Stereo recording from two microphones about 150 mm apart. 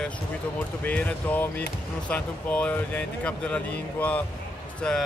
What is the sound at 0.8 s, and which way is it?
Speech, 10° left (ahead or behind).